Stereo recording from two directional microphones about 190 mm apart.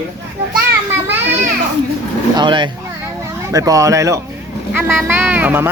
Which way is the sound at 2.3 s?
25° right (ahead or behind).